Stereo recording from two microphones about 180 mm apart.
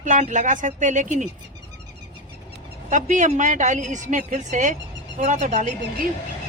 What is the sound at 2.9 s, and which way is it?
Speech, 45° right (ahead or behind).